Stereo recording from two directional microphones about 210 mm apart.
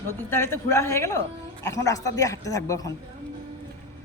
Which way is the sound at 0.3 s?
10° left (ahead or behind).